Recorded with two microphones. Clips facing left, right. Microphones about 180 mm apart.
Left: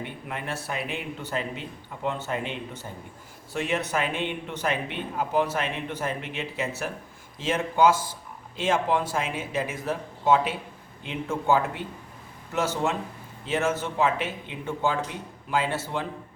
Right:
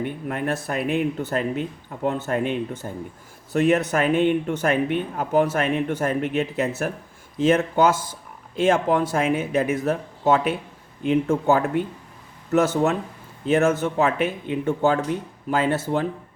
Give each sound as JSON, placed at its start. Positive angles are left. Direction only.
{"t": 0.0, "sound": "speech", "side_deg": -50}